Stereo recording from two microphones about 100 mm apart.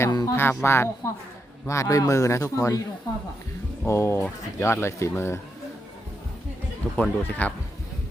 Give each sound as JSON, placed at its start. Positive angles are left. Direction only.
{"t": 0.1, "sound": "speech", "side_deg": 40}
{"t": 0.3, "sound": "a man's voice", "side_deg": 25}
{"t": 3.8, "sound": "speech", "side_deg": 30}
{"t": 6.9, "sound": "speech", "side_deg": 15}